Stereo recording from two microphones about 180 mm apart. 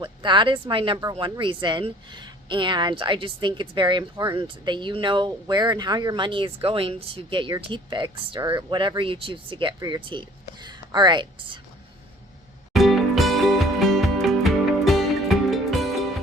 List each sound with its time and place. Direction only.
0.0 s speech: 25° right (ahead or behind)
12.7 s music: centre (ahead or behind)